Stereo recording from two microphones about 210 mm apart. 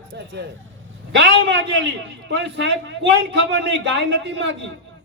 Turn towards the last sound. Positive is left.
turn(degrees=-55)  # may be behind; listen again after turning